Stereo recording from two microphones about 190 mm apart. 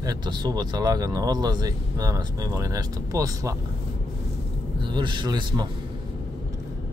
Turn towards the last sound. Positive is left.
turn(degrees=-25)  # may be behind; listen again after turning